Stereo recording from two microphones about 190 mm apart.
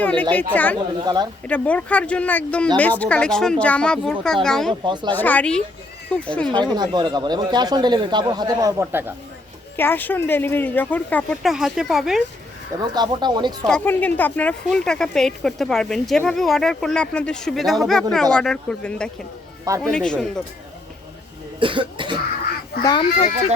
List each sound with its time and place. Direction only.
0.0 s speech: 10° left (ahead or behind)
1.0 s speech: 20° right (ahead or behind)
1.5 s speech: 5° left (ahead or behind)
4.7 s speech: 25° right (ahead or behind)
5.1 s speech: 10° left (ahead or behind)
6.7 s speech: 25° right (ahead or behind)
9.7 s speech: 10° left (ahead or behind)
12.7 s speech: 20° right (ahead or behind)
13.7 s speech: 5° left (ahead or behind)
21.6 s speech: 25° right (ahead or behind)
22.8 s speech: 20° left (ahead or behind)